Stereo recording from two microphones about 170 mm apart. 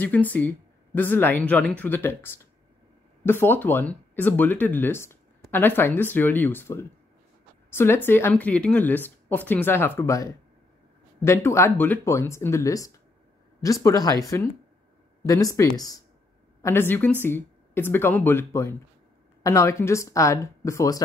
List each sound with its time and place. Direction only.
0.0 s speech: 10° left (ahead or behind)